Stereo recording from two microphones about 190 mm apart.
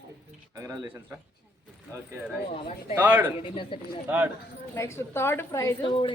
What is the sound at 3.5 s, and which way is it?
Speech, 30° left (ahead or behind).